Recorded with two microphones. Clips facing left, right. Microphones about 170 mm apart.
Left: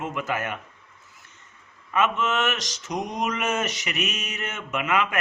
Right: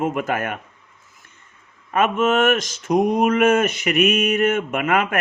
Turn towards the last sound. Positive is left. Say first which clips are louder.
# right 5 dB
turn(degrees=-50)  # may be behind; listen again after turning